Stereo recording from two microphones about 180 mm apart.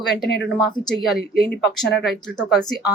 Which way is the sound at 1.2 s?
60° left (ahead or behind).